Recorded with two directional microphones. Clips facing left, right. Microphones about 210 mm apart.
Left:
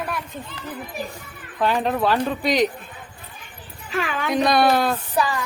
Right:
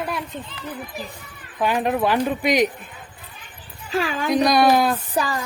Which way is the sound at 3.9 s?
35° right (ahead or behind).